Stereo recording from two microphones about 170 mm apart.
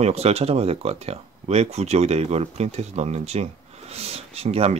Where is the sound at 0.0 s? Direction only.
40° right (ahead or behind).